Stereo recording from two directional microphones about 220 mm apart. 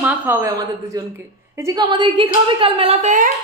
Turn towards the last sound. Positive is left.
turn(degrees=-35)  # may be behind; listen again after turning